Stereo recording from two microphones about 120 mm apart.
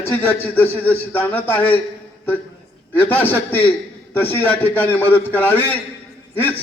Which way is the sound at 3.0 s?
15° left (ahead or behind).